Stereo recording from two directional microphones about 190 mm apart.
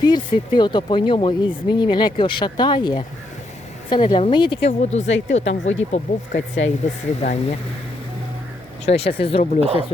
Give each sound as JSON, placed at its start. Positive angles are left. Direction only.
{"t": 0.0, "sound": "speech", "side_deg": 25}
{"t": 8.9, "sound": "speech", "side_deg": 30}
{"t": 9.6, "sound": "speech", "side_deg": -30}